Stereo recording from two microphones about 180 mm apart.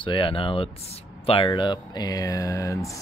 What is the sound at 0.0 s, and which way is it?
Speech, 30° left (ahead or behind).